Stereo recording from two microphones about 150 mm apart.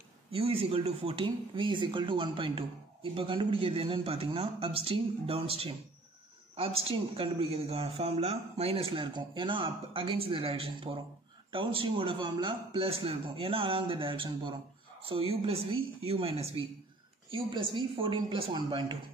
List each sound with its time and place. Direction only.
0.3 s speech: 40° right (ahead or behind)